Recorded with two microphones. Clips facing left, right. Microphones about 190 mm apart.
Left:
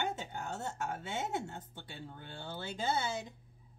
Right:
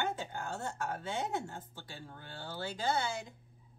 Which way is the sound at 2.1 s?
20° left (ahead or behind).